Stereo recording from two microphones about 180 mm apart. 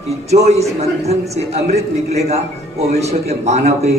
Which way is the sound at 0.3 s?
35° right (ahead or behind).